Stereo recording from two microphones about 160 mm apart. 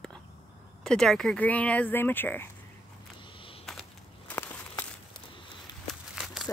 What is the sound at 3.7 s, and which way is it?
Walk, 5° left (ahead or behind).